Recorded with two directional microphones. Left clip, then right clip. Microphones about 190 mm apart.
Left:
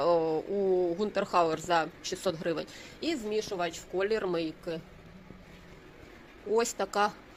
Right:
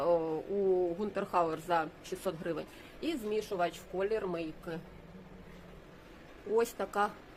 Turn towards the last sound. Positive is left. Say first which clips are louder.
# left 3 dB
turn(degrees=25)  # may be behind; listen again after turning